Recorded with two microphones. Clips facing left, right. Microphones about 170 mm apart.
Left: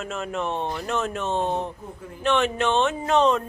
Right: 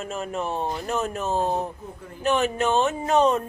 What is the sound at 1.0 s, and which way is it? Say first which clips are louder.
Speech: even; 40° right (ahead or behind).